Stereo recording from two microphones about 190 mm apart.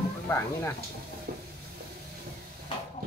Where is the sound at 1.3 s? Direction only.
50° right (ahead or behind).